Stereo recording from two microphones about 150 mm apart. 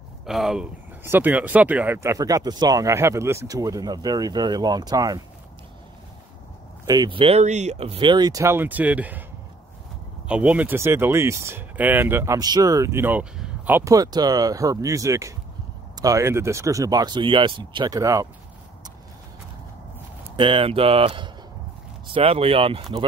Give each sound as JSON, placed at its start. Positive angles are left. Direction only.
{"t": 0.3, "sound": "speech", "side_deg": -5}
{"t": 1.0, "sound": "speech", "side_deg": -15}
{"t": 6.9, "sound": "speech", "side_deg": -30}
{"t": 10.2, "sound": "speech", "side_deg": -10}
{"t": 20.3, "sound": "speech", "side_deg": -35}